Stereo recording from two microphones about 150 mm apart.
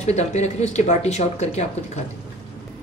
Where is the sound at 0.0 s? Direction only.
50° left (ahead or behind).